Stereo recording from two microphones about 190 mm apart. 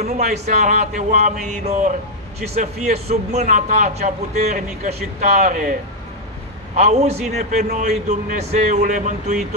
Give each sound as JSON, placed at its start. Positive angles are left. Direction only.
{"t": 0.0, "sound": "a man's voice", "side_deg": -35}